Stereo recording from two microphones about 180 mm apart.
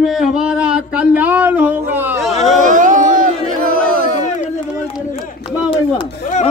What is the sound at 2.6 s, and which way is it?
Music, 45° right (ahead or behind).